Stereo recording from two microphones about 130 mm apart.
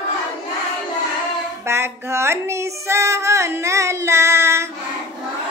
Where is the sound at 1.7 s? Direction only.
20° right (ahead or behind).